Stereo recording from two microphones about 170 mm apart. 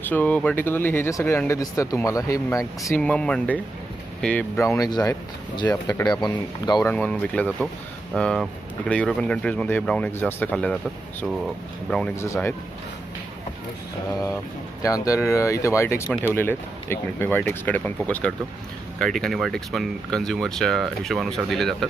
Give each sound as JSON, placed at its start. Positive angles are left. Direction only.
{"t": 0.1, "sound": "speech", "side_deg": 10}
{"t": 3.0, "sound": "a man's voice", "side_deg": 5}
{"t": 6.8, "sound": "speech", "side_deg": 5}
{"t": 11.9, "sound": "speech", "side_deg": 5}
{"t": 12.2, "sound": "speech", "side_deg": 15}
{"t": 14.8, "sound": "speech", "side_deg": 20}